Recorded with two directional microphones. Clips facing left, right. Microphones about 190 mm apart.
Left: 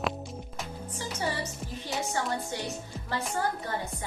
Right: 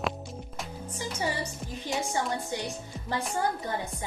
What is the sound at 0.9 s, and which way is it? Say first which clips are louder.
Music: right 1 dB; 15° right (ahead or behind).